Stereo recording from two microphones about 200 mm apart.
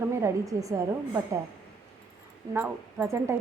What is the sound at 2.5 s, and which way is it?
Speech, 10° right (ahead or behind).